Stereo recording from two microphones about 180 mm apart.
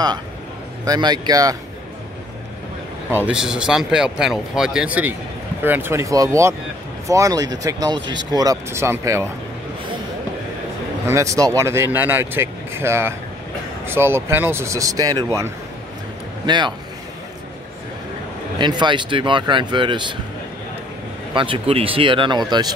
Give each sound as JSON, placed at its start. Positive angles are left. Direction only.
{"t": 0.8, "sound": "speech", "side_deg": -20}
{"t": 3.3, "sound": "speech", "side_deg": -5}
{"t": 11.1, "sound": "speech", "side_deg": -15}
{"t": 16.4, "sound": "speech", "side_deg": -25}
{"t": 18.6, "sound": "speech", "side_deg": -25}
{"t": 21.3, "sound": "speech", "side_deg": -30}